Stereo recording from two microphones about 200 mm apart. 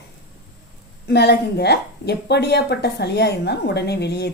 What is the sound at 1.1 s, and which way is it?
A woman's voice, 55° left (ahead or behind).